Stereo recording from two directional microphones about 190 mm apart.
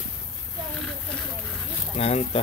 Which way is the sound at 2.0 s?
35° left (ahead or behind).